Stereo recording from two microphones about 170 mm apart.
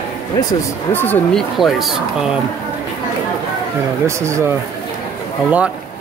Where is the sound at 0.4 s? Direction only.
20° left (ahead or behind).